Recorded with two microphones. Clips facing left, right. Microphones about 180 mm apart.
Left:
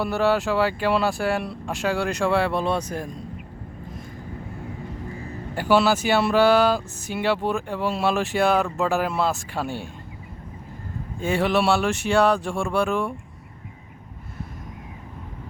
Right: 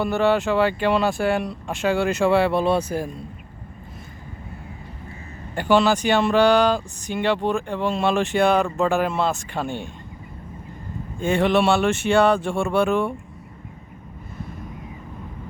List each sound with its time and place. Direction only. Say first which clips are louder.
0.0 s speech: right 2 dB; centre (ahead or behind)
5.5 s speech: right 1 dB; 5° left (ahead or behind)
11.2 s speech: right 3 dB; centre (ahead or behind)